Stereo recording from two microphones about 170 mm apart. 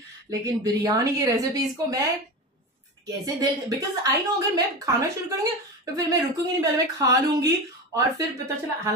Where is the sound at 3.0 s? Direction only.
20° right (ahead or behind).